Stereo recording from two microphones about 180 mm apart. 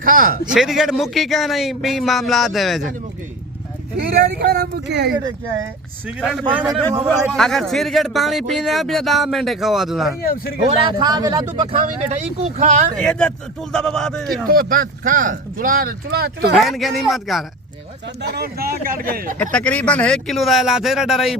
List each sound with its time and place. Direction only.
0.0 s speech: 50° right (ahead or behind)
0.5 s speech: centre (ahead or behind)
4.2 s speech: 65° right (ahead or behind)
6.1 s speech: 5° right (ahead or behind)
10.2 s speech: 55° left (ahead or behind)
11.0 s speech: 20° right (ahead or behind); by 12.8 s 40° right (ahead or behind)
13.0 s speech: 5° left (ahead or behind)
14.4 s speech: 55° right (ahead or behind)
16.6 s speech: centre (ahead or behind)
18.2 s speech: 60° right (ahead or behind)
19.4 s speech: 10° left (ahead or behind)